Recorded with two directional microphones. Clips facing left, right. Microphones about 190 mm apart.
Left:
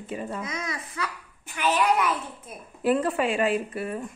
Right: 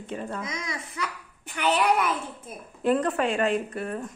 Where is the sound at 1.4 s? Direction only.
65° right (ahead or behind).